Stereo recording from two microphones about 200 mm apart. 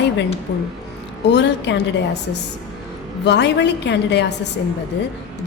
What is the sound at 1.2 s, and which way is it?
Speech, 60° left (ahead or behind).